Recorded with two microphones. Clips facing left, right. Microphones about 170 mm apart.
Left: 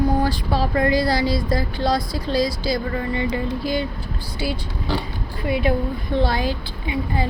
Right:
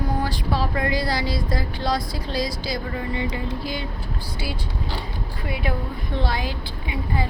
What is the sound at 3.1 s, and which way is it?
Music, 45° left (ahead or behind).